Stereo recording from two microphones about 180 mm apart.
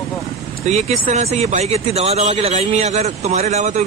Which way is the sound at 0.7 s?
40° right (ahead or behind).